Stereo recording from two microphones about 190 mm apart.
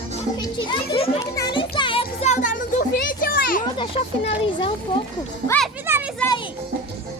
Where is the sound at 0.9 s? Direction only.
30° left (ahead or behind).